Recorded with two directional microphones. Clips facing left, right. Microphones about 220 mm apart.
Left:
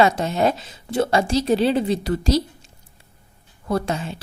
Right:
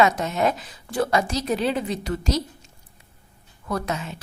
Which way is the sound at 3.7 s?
30° left (ahead or behind).